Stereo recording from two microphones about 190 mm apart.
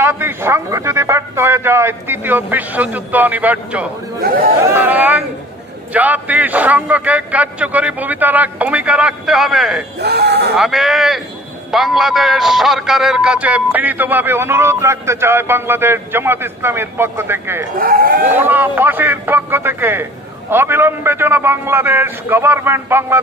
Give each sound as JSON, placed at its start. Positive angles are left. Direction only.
{"t": 0.0, "sound": "speech", "side_deg": -10}
{"t": 4.2, "sound": "speech", "side_deg": -50}
{"t": 4.6, "sound": "speech", "side_deg": -10}
{"t": 10.0, "sound": "speech", "side_deg": -55}
{"t": 10.5, "sound": "speech", "side_deg": 0}
{"t": 17.7, "sound": "speech", "side_deg": -50}
{"t": 18.3, "sound": "speech", "side_deg": -10}